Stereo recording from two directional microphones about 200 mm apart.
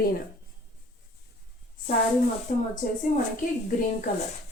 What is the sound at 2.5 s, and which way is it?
Speech, 40° left (ahead or behind).